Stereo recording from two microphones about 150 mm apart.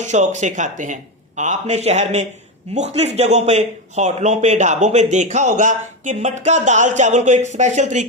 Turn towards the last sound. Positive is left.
turn(degrees=-50)  # may be behind; listen again after turning